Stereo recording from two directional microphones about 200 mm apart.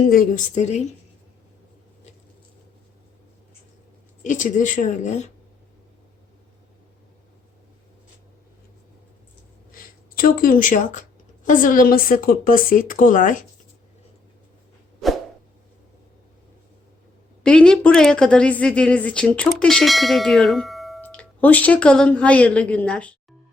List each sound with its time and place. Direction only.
0.1 s a woman's voice: 40° left (ahead or behind)
4.2 s a woman's voice: 40° left (ahead or behind)
9.7 s a woman's voice: 45° left (ahead or behind)
17.4 s a woman's voice: 5° left (ahead or behind)